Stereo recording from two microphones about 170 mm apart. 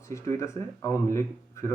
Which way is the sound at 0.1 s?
15° left (ahead or behind).